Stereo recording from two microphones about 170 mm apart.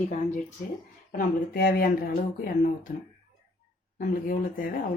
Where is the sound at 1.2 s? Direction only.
60° left (ahead or behind).